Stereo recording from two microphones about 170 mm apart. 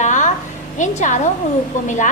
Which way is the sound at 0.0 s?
45° left (ahead or behind).